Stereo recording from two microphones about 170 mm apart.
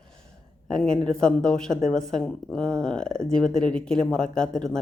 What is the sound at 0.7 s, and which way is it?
Speech, 5° left (ahead or behind).